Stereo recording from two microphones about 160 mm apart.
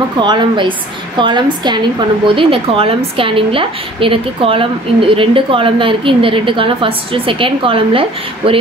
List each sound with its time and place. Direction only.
0.2 s a woman's voice: 30° right (ahead or behind)